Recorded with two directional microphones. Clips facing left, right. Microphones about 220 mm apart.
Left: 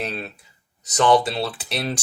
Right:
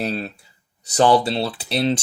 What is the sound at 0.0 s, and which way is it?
Speech, 35° right (ahead or behind).